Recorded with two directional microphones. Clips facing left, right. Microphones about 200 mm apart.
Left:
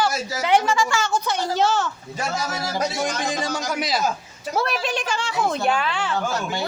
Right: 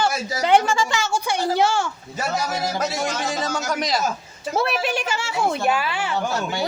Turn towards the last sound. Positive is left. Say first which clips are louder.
# even
turn(degrees=-5)  # may be behind; listen again after turning